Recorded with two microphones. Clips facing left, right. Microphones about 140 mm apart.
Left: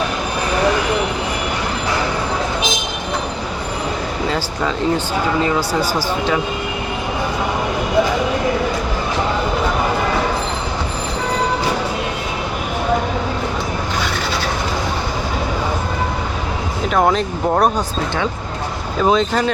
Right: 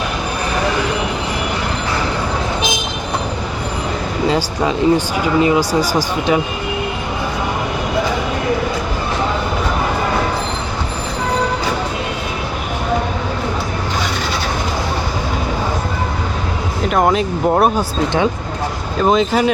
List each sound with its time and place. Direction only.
4.3 s speech: 15° right (ahead or behind)
16.9 s speech: 5° right (ahead or behind)
19.0 s speech: 5° right (ahead or behind)